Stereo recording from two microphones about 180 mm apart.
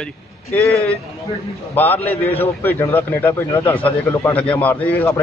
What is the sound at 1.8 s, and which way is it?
A man's voice, 10° left (ahead or behind).